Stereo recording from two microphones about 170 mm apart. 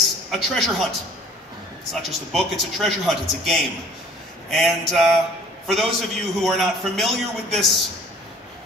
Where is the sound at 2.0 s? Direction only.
Centre (ahead or behind).